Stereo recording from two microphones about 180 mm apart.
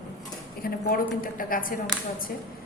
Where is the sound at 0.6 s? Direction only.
55° left (ahead or behind).